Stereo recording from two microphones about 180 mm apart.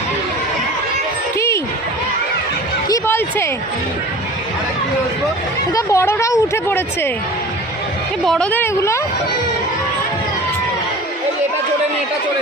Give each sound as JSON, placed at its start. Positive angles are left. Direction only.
{"t": 2.9, "sound": "music", "side_deg": 15}
{"t": 5.7, "sound": "speech", "side_deg": 15}
{"t": 8.2, "sound": "speech", "side_deg": 5}